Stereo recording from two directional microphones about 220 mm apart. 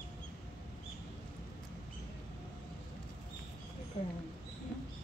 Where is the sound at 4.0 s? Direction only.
30° left (ahead or behind).